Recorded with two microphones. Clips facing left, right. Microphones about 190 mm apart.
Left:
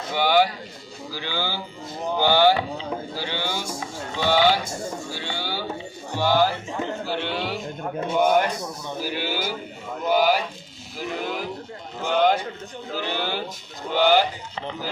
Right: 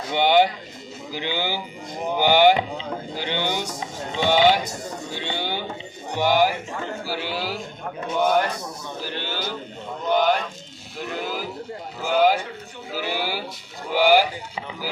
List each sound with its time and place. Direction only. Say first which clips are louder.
0.1 s speech: right 2 dB; 20° right (ahead or behind); by 7.6 s centre (ahead or behind)
9.0 s speech: left 3 dB; 10° left (ahead or behind); by 14.3 s 10° right (ahead or behind)